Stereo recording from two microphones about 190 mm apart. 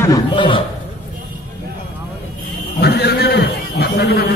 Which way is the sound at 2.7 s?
60° left (ahead or behind).